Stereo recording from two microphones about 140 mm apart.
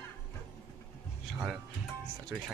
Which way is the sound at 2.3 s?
10° right (ahead or behind).